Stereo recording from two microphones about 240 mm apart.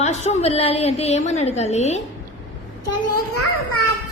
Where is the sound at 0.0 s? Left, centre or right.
Left.